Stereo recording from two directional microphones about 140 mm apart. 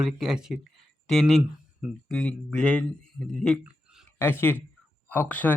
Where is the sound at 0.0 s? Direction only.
5° right (ahead or behind).